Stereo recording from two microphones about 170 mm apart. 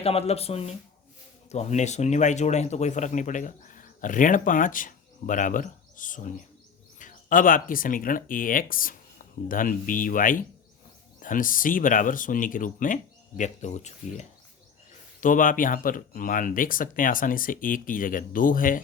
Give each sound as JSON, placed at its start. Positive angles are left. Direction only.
{"t": 0.0, "sound": "speech", "side_deg": 35}